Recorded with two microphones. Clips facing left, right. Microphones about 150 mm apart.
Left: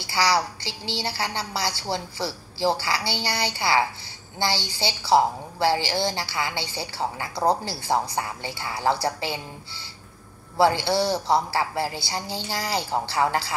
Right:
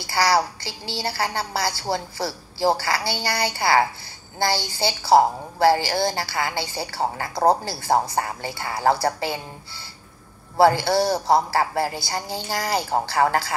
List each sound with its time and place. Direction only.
0.0 s a woman's voice: 45° right (ahead or behind)
10.6 s a woman's voice: 45° right (ahead or behind)